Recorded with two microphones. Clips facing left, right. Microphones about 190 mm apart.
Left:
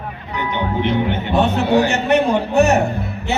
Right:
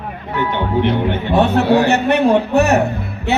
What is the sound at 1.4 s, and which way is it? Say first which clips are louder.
Speech: right 2 dB; 60° right (ahead or behind).